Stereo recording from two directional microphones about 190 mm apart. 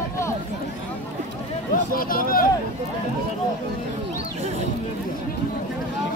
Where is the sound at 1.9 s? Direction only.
50° left (ahead or behind).